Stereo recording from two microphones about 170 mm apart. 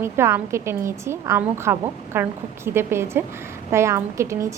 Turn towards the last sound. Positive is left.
turn(degrees=-15)  # may be behind; listen again after turning